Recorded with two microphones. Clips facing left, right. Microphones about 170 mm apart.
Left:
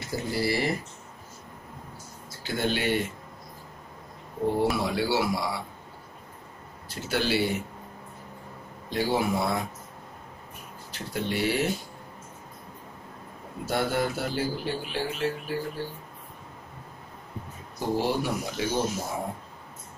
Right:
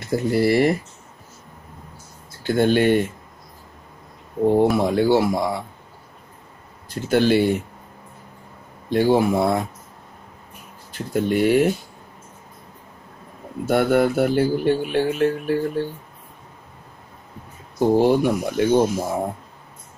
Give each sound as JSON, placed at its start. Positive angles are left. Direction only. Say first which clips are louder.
{"t": 0.0, "sound": "speech", "louder": "right 9 dB", "side_deg": -55}
{"t": 2.4, "sound": "speech", "louder": "right 10 dB", "side_deg": -50}
{"t": 4.6, "sound": "speech", "louder": "right 8 dB", "side_deg": -50}
{"t": 6.9, "sound": "speech", "louder": "right 10 dB", "side_deg": -50}
{"t": 8.9, "sound": "speech", "louder": "right 9 dB", "side_deg": -50}
{"t": 10.9, "sound": "speech", "louder": "right 9 dB", "side_deg": -50}
{"t": 13.7, "sound": "speech", "louder": "right 9 dB", "side_deg": -60}
{"t": 17.7, "sound": "speech", "louder": "right 10 dB", "side_deg": -55}